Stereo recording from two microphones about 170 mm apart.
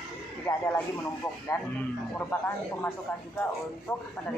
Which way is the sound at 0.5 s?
20° left (ahead or behind).